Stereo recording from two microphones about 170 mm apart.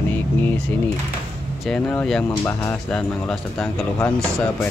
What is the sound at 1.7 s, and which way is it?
Speech, 5° left (ahead or behind).